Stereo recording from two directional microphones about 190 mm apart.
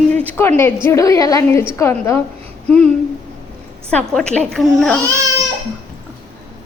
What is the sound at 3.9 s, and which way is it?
A woman's voice, 5° left (ahead or behind).